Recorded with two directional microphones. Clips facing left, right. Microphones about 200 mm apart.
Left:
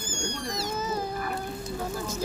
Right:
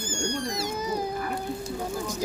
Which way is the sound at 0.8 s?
15° right (ahead or behind).